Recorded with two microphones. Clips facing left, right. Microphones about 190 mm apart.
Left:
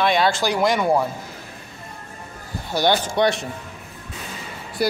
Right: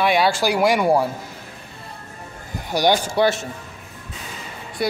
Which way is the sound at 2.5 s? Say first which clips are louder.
Right 1 dB; 15° right (ahead or behind).